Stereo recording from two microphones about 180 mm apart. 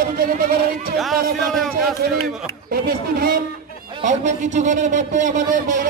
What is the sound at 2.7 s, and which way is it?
Speech, 55° right (ahead or behind).